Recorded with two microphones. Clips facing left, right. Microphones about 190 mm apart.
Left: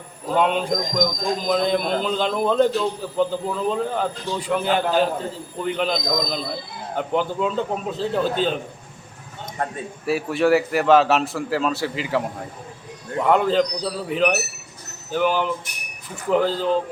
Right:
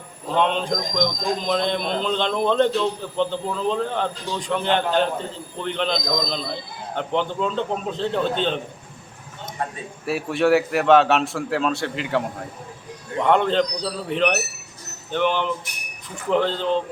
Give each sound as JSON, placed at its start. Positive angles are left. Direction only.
{"t": 0.3, "sound": "a man's voice", "side_deg": 5}
{"t": 9.6, "sound": "speech", "side_deg": 50}
{"t": 10.1, "sound": "a man's voice", "side_deg": 0}